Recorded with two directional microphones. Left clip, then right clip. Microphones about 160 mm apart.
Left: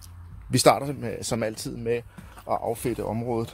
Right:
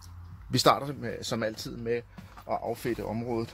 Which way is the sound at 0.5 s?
20° left (ahead or behind).